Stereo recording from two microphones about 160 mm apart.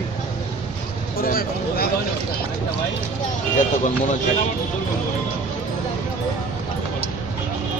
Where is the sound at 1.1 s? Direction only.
70° left (ahead or behind).